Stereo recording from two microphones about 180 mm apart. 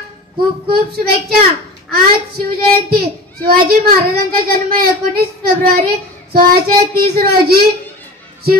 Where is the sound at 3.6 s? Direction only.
55° right (ahead or behind).